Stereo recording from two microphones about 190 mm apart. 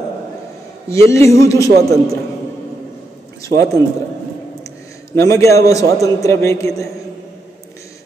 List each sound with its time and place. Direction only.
0.8 s a man's voice: 15° left (ahead or behind)
3.4 s a man's voice: 15° left (ahead or behind)
5.1 s a man's voice: 15° left (ahead or behind)